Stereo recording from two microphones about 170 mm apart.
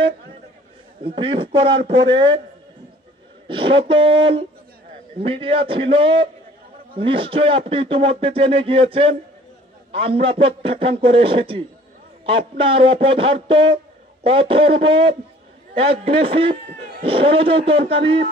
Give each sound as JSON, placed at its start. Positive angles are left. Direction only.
{"t": 1.0, "sound": "a man's voice", "side_deg": -30}
{"t": 3.4, "sound": "speech", "side_deg": -30}